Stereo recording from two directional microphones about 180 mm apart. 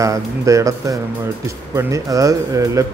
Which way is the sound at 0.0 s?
20° right (ahead or behind).